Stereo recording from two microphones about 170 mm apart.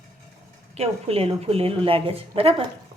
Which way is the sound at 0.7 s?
35° right (ahead or behind).